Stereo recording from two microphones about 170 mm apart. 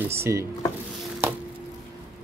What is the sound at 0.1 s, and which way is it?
Speech, 15° right (ahead or behind).